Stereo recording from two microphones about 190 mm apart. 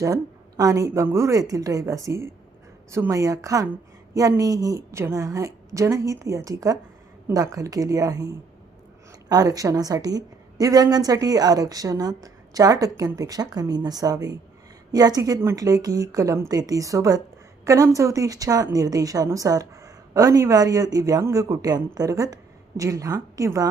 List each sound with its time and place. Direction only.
0.0 s a woman's voice: 20° right (ahead or behind)